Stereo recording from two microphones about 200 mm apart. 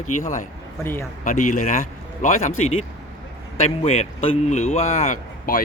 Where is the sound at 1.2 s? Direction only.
40° left (ahead or behind).